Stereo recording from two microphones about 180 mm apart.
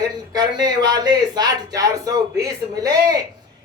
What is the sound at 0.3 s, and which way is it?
Speech, 20° right (ahead or behind).